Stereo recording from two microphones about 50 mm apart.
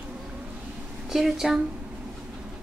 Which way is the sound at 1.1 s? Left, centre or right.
Centre.